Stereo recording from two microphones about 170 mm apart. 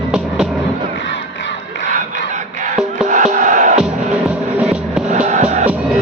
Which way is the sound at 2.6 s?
45° right (ahead or behind).